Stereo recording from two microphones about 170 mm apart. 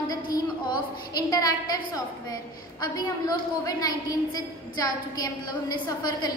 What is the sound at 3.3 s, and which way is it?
A woman's voice, 20° left (ahead or behind).